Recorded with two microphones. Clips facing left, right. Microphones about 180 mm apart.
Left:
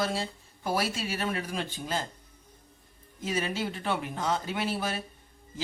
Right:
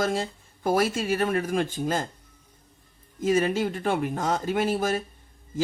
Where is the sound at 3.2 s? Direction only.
50° right (ahead or behind).